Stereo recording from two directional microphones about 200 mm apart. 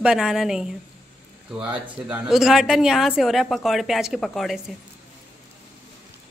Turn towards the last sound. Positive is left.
turn(degrees=0)  # may be behind; listen again after turning